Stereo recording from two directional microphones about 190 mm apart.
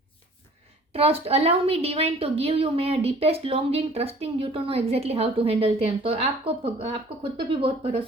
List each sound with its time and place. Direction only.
0.9 s a woman's voice: 30° right (ahead or behind)